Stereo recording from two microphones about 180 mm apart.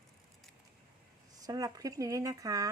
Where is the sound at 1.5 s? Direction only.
20° right (ahead or behind).